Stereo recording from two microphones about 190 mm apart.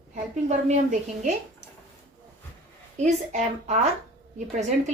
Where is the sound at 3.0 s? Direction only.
35° right (ahead or behind).